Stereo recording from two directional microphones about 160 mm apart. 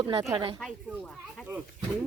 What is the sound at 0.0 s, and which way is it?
Speech, 30° right (ahead or behind).